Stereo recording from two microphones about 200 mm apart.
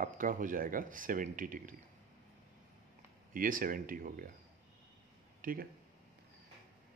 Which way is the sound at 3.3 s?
45° right (ahead or behind).